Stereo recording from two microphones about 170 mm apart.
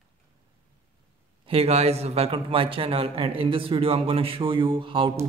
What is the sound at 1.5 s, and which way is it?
Speech, 35° right (ahead or behind).